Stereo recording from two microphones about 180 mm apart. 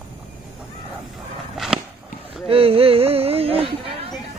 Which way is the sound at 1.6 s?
Centre (ahead or behind).